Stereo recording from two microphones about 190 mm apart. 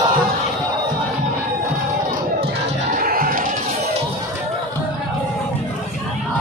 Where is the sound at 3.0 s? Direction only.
50° right (ahead or behind).